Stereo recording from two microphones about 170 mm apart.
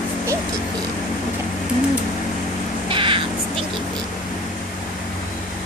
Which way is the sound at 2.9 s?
30° right (ahead or behind).